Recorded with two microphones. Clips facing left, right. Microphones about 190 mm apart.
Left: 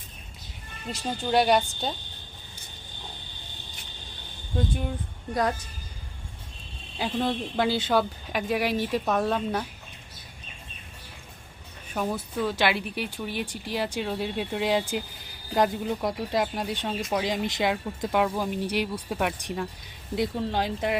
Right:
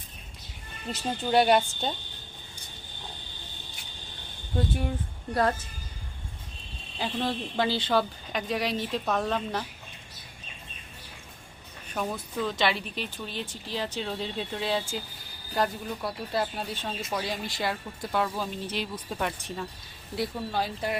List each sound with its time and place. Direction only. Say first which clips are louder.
0.9 s speech: even; centre (ahead or behind)
4.5 s speech: even; 5° right (ahead or behind)
7.0 s speech: left 3 dB; centre (ahead or behind)
11.9 s speech: left 3 dB; 5° left (ahead or behind)